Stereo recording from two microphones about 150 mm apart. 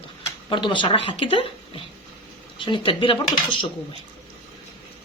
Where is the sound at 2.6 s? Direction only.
35° left (ahead or behind).